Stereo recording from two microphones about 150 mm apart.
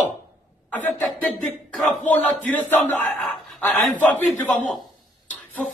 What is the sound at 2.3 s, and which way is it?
A man's voice, 10° left (ahead or behind).